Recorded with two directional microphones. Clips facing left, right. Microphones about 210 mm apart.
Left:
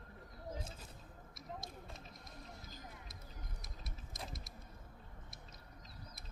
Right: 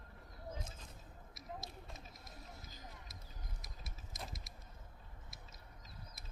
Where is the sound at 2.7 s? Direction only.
50° left (ahead or behind).